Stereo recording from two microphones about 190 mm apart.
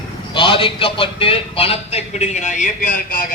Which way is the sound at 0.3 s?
25° left (ahead or behind).